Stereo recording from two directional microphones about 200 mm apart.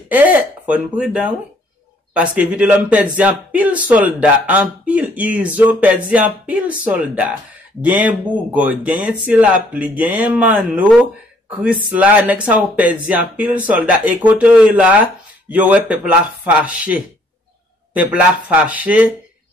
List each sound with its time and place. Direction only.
0.1 s speech: 5° right (ahead or behind)